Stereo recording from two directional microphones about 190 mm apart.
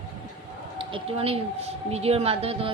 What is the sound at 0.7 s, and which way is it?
A woman's voice, 30° right (ahead or behind).